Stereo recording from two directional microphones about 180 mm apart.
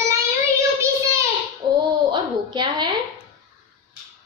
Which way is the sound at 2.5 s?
25° right (ahead or behind).